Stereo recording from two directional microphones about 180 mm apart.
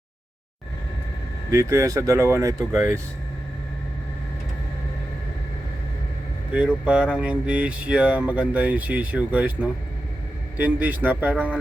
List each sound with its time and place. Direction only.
1.5 s speech: 15° right (ahead or behind)
6.8 s speech: 5° right (ahead or behind)